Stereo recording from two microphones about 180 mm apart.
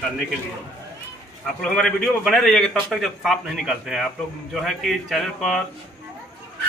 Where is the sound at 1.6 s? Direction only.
5° left (ahead or behind).